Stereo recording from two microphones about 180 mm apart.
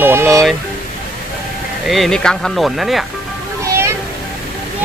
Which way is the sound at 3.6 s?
15° right (ahead or behind).